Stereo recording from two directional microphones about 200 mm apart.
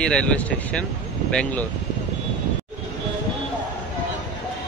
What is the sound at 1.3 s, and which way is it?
Speech, 5° left (ahead or behind).